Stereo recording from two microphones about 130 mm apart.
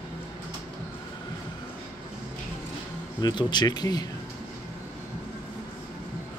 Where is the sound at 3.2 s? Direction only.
35° left (ahead or behind).